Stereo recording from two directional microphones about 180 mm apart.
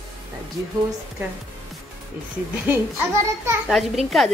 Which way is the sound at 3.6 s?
Centre (ahead or behind).